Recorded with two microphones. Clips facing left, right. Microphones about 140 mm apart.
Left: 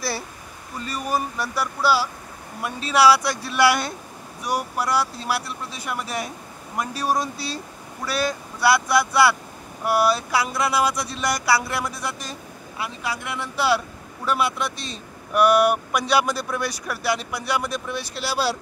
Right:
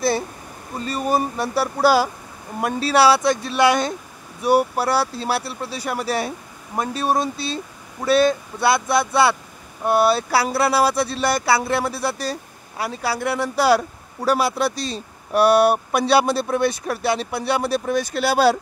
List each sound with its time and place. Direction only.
0.7 s speech: 30° right (ahead or behind)
1.8 s speech: 45° right (ahead or behind)
2.6 s speech: 35° right (ahead or behind); by 18.6 s 50° right (ahead or behind)